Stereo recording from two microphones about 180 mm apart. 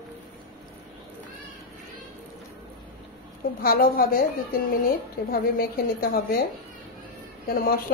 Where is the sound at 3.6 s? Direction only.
55° left (ahead or behind).